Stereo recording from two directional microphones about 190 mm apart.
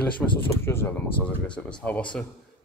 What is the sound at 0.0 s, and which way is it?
Speech, 10° left (ahead or behind).